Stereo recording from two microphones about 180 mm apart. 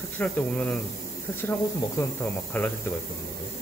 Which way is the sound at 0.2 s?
10° left (ahead or behind).